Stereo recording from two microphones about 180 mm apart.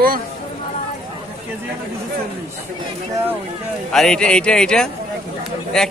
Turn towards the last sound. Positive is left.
turn(degrees=5)  # may be behind; listen again after turning